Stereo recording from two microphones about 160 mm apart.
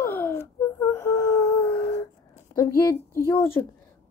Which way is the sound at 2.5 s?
20° left (ahead or behind).